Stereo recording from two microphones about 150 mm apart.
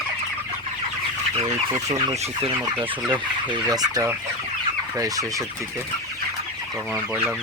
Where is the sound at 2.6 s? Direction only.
20° right (ahead or behind).